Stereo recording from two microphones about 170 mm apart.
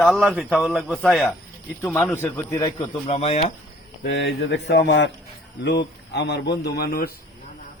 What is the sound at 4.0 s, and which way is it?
Speech, 90° left.